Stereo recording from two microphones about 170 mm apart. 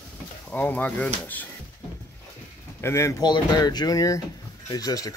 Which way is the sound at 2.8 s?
15° left (ahead or behind).